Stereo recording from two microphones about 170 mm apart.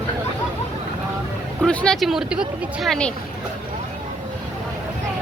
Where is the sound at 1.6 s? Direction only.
5° left (ahead or behind).